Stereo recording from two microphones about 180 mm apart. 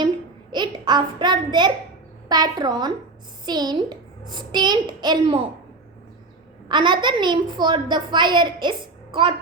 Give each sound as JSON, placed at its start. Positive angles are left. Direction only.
{"t": 0.5, "sound": "a child's voice", "side_deg": -25}
{"t": 6.7, "sound": "a child's voice", "side_deg": -25}